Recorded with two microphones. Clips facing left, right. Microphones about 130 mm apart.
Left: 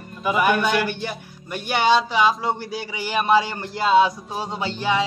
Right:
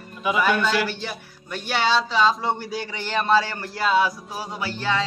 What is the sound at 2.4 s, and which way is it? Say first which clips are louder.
A man's voice: even; centre (ahead or behind).